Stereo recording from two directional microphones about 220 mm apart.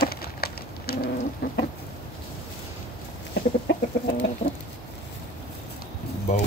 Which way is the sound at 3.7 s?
55° left (ahead or behind).